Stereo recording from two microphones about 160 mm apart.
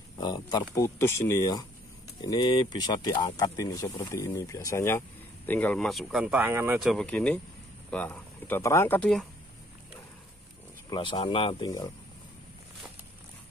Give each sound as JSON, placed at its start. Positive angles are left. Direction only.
{"t": 0.2, "sound": "speech", "side_deg": 25}
{"t": 6.8, "sound": "speech", "side_deg": 0}
{"t": 10.9, "sound": "speech", "side_deg": 30}